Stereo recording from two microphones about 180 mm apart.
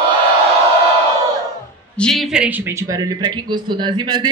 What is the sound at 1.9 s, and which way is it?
A man's voice, 5° left (ahead or behind).